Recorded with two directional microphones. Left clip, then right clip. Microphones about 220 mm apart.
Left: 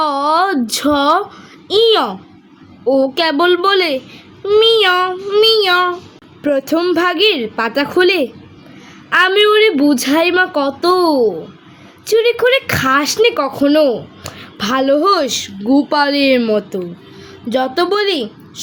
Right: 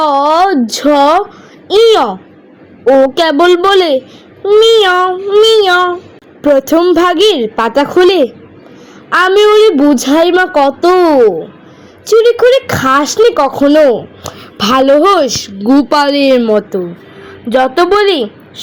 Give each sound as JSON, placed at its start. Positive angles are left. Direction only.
{"t": 0.0, "sound": "a sound", "side_deg": 0}
{"t": 1.6, "sound": "a woman's voice", "side_deg": 0}
{"t": 4.5, "sound": "child singing", "side_deg": 25}
{"t": 4.8, "sound": "a woman's voice", "side_deg": 0}
{"t": 5.4, "sound": "child singing", "side_deg": 20}
{"t": 5.6, "sound": "a woman's voice", "side_deg": 0}
{"t": 15.6, "sound": "a woman's voice", "side_deg": -20}